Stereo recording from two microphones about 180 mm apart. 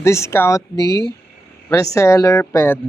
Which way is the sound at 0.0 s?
15° left (ahead or behind).